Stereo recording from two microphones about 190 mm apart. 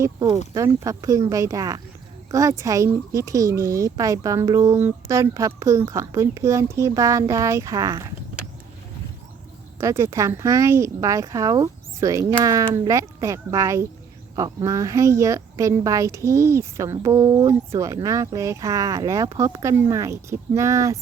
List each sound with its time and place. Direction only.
0.0 s speech: 15° right (ahead or behind)
9.8 s speech: 15° right (ahead or behind)